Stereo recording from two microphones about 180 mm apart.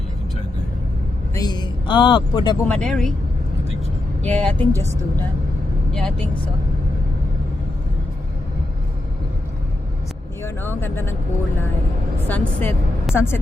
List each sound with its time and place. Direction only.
1.4 s a man's voice: 25° left (ahead or behind)
2.6 s speech: 5° left (ahead or behind)
4.2 s a woman's voice: 5° left (ahead or behind)
5.9 s speech: 5° left (ahead or behind)
10.4 s vehicle: 10° left (ahead or behind)
12.3 s a woman's voice: 10° left (ahead or behind)